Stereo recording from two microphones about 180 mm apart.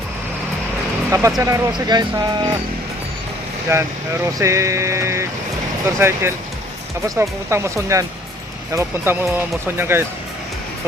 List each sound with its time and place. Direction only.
1.1 s speech: 15° right (ahead or behind)
3.7 s speech: 15° right (ahead or behind)